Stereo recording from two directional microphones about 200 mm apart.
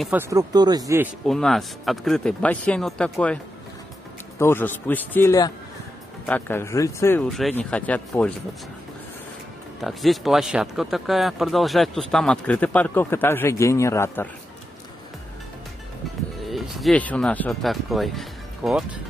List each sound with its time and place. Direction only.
0.3 s speech: 20° right (ahead or behind)
1.2 s speech: centre (ahead or behind)
4.4 s a man's voice: 10° left (ahead or behind)
9.8 s speech: centre (ahead or behind)
16.4 s speech: centre (ahead or behind)